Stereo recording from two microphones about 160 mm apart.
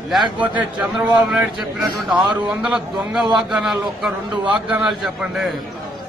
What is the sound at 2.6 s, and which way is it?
A man's voice, 5° right (ahead or behind).